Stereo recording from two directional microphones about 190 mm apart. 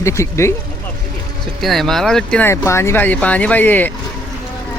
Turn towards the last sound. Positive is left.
turn(degrees=10)  # may be behind; listen again after turning